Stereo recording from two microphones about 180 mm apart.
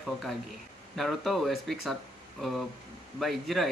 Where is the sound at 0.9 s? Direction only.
Centre (ahead or behind).